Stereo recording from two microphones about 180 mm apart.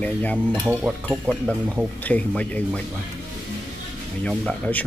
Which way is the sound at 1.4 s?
5° left (ahead or behind).